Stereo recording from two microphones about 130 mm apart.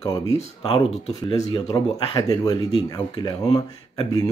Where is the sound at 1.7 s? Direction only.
35° left (ahead or behind).